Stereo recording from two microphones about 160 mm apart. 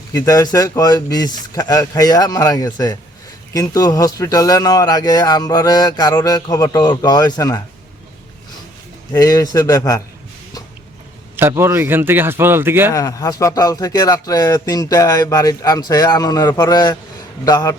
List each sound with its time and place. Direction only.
0.1 s a man's voice: 20° left (ahead or behind)
9.1 s a man's voice: 20° left (ahead or behind)
11.3 s a man's voice: 15° right (ahead or behind)
12.9 s a man's voice: 20° left (ahead or behind)